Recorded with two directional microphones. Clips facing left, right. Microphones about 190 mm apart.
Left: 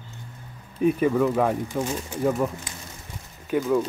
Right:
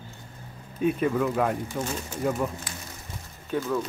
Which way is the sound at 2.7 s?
25° left (ahead or behind).